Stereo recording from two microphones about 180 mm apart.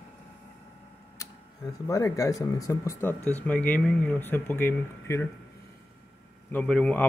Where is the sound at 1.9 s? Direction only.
20° left (ahead or behind).